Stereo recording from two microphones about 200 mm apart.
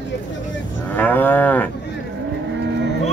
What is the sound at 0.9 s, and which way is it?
Moo, 10° left (ahead or behind).